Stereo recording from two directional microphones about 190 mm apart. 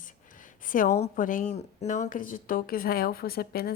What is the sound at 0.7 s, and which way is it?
A woman's voice, 40° left (ahead or behind).